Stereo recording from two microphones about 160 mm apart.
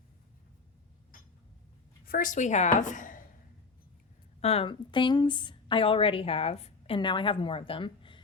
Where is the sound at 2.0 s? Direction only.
60° left (ahead or behind).